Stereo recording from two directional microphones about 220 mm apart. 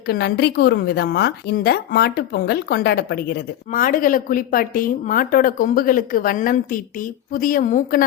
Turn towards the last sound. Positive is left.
turn(degrees=35)  # may be behind; listen again after turning